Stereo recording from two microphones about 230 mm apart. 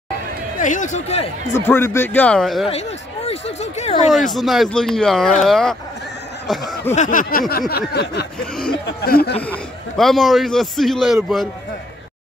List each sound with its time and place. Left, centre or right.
0.6 s a sound: left
1.5 s speech: centre
2.7 s speech: left
4.3 s a man's voice: centre
6.9 s a sound: left
7.9 s speech: left
9.4 s a man's voice: centre